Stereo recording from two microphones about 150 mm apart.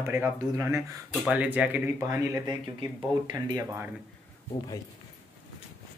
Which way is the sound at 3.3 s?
25° right (ahead or behind).